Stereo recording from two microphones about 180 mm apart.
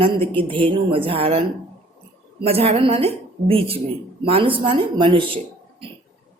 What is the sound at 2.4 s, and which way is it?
A woman's voice, 35° right (ahead or behind).